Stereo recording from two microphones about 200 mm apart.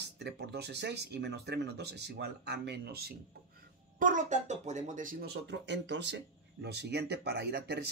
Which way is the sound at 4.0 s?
40° right (ahead or behind).